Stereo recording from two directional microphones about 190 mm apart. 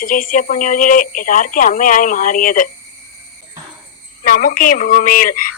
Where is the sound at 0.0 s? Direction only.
45° left (ahead or behind).